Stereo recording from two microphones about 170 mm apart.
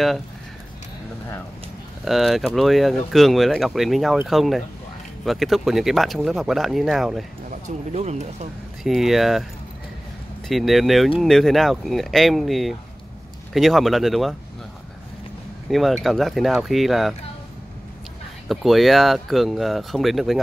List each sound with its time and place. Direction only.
2.0 s speech: centre (ahead or behind)
7.9 s speech: 40° right (ahead or behind)
8.8 s speech: centre (ahead or behind)
10.5 s speech: centre (ahead or behind)
15.7 s speech: centre (ahead or behind)
18.5 s speech: centre (ahead or behind)